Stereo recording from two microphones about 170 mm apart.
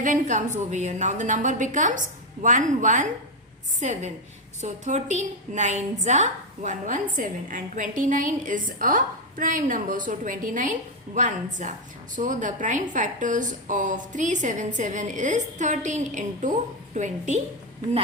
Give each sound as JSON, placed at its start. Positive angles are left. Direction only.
{"t": 0.0, "sound": "a woman's voice", "side_deg": -50}